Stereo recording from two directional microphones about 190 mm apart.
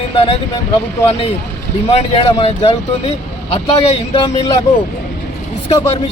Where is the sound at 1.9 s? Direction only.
30° left (ahead or behind).